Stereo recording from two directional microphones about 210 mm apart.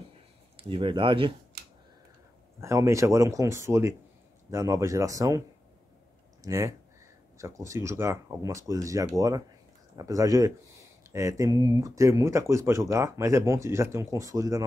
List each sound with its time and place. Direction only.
0.6 s speech: 25° right (ahead or behind)
2.6 s speech: 15° right (ahead or behind)
6.4 s speech: 15° right (ahead or behind)